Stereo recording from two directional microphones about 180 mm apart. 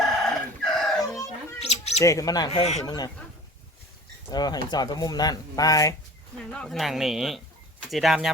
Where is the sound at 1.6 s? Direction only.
35° left (ahead or behind).